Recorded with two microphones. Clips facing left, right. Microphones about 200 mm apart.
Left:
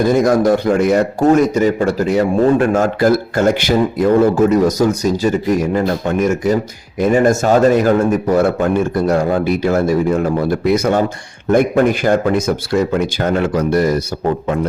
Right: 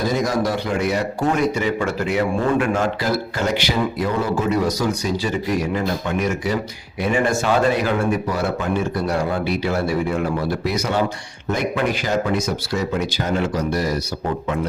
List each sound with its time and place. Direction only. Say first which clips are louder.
0.0 s a man's voice: left 8 dB; 50° left (ahead or behind)